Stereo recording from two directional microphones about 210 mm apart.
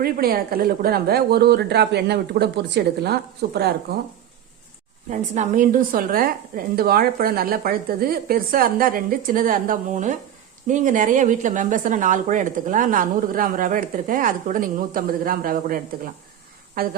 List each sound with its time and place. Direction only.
0.0 s speech: 45° right (ahead or behind)
5.0 s speech: 35° right (ahead or behind)